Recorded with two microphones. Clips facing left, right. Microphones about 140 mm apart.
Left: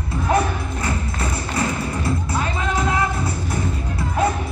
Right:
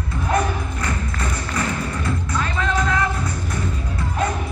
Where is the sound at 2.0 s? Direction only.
25° left (ahead or behind).